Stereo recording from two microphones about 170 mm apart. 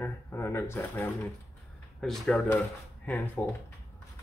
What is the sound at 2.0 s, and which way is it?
Speech, centre (ahead or behind).